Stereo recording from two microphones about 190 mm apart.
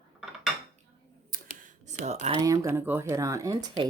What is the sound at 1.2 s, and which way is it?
Computer keyboard, 45° right (ahead or behind).